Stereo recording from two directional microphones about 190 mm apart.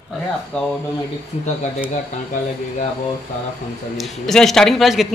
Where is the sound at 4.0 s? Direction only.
Centre (ahead or behind).